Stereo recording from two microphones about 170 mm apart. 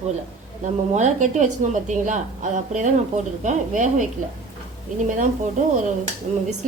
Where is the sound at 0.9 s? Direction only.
45° right (ahead or behind).